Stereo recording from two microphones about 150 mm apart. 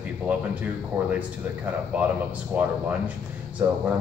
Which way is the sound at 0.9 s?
15° right (ahead or behind).